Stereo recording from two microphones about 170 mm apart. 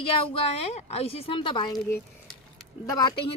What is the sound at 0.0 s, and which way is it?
Speech, 30° left (ahead or behind).